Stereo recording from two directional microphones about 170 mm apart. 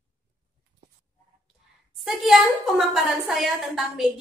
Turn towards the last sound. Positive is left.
turn(degrees=-5)  # may be behind; listen again after turning